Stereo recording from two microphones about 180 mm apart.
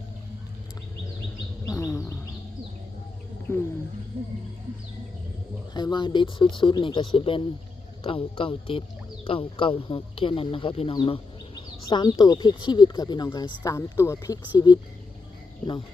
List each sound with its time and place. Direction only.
1.6 s wild animals: 15° left (ahead or behind)
3.5 s a sound: 10° left (ahead or behind)
5.7 s speech: 25° left (ahead or behind)